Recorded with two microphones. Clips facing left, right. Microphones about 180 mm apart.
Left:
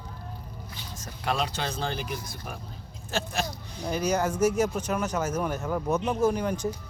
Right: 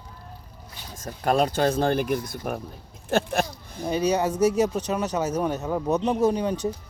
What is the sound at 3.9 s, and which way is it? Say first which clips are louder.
Speech: right 3 dB; 15° right (ahead or behind).